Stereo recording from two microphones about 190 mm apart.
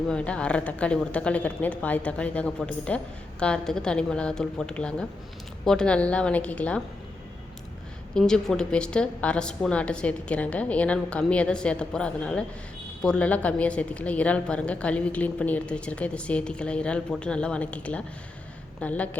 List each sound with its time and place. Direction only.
0.1 s a woman's voice: 5° left (ahead or behind)
8.1 s a woman's voice: 5° left (ahead or behind)